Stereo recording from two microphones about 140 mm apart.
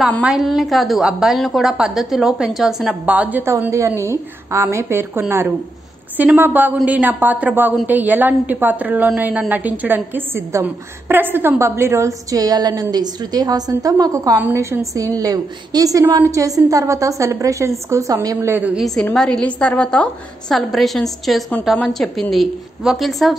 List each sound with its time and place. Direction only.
0.2 s a woman's voice: 5° right (ahead or behind); by 18.5 s 25° right (ahead or behind)
18.8 s a woman's voice: centre (ahead or behind)